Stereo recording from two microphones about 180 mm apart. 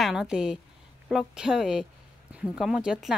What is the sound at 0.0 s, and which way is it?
Speech, 5° right (ahead or behind).